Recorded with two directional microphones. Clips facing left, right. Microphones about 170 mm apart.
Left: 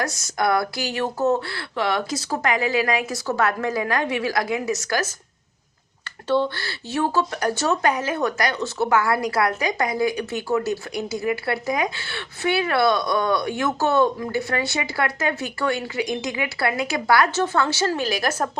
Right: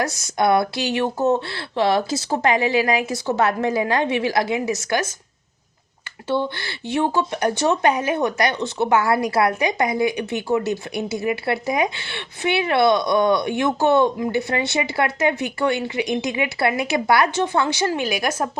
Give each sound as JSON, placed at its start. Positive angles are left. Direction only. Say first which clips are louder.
{"t": 0.0, "sound": "speech", "louder": "right 3 dB", "side_deg": -25}
{"t": 6.2, "sound": "speech", "louder": "left 1 dB", "side_deg": -15}